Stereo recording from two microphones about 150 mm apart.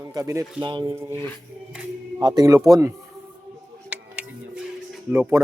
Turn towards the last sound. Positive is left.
turn(degrees=-10)  # may be behind; listen again after turning